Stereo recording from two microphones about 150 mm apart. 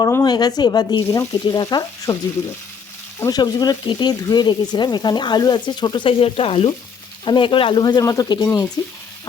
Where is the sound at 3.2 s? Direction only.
25° left (ahead or behind).